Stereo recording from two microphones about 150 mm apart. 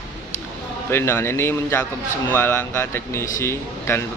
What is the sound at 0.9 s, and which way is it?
A man's voice, 15° left (ahead or behind).